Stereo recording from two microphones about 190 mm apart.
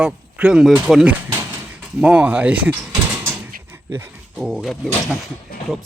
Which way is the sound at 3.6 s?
10° right (ahead or behind).